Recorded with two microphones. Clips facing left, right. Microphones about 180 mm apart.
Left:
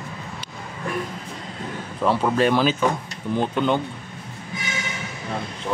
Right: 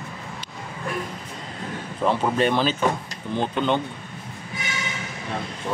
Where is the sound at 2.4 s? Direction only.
5° left (ahead or behind).